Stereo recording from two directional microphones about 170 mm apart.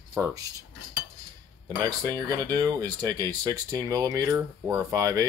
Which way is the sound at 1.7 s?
25° right (ahead or behind).